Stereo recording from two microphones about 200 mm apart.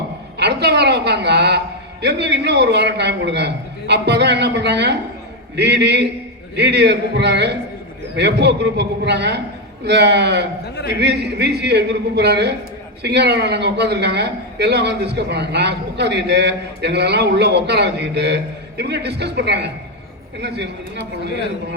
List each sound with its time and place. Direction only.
0.3 s a man's voice: 55° right (ahead or behind)